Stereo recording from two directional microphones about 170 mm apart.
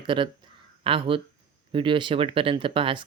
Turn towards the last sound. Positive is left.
turn(degrees=-30)  # may be behind; listen again after turning